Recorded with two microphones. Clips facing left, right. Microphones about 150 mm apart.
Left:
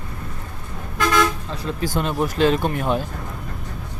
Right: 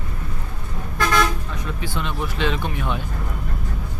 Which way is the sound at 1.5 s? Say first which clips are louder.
Left 4 dB; 35° left (ahead or behind).